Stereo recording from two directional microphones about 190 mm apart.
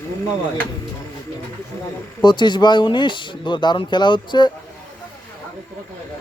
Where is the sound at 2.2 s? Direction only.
25° left (ahead or behind).